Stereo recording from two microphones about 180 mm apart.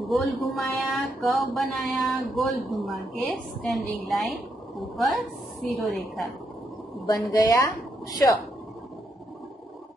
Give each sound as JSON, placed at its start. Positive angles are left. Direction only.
{"t": 0.0, "sound": "speech", "side_deg": 0}
{"t": 7.3, "sound": "a woman's voice", "side_deg": 20}